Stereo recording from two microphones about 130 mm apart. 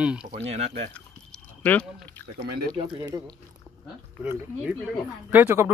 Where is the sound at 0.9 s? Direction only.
10° left (ahead or behind).